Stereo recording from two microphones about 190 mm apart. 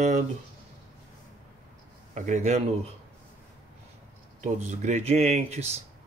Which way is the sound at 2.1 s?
40° right (ahead or behind).